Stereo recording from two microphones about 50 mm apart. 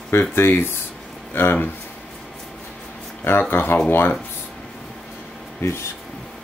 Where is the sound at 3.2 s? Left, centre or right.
Left.